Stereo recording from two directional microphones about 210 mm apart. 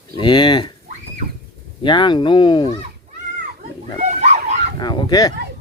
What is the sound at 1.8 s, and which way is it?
Speech, 20° left (ahead or behind).